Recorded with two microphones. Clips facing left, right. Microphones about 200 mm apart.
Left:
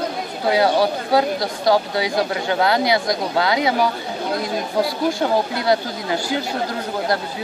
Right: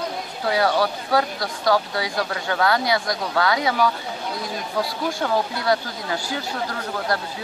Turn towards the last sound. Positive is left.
turn(degrees=15)  # may be behind; listen again after turning